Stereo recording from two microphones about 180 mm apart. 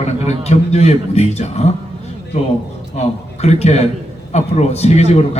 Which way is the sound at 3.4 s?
35° left (ahead or behind).